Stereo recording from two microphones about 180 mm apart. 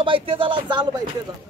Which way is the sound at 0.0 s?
30° right (ahead or behind).